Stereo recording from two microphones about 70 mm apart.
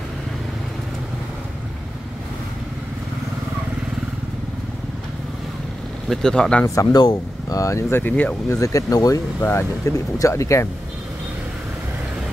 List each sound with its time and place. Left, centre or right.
6.0 s speech: centre
6.6 s speech: left
7.0 s speech: left
7.9 s speech: left
8.5 s speech: left
9.4 s speech: left
9.8 s speech: left